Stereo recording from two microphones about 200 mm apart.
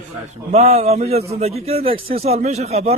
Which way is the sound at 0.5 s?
30° right (ahead or behind).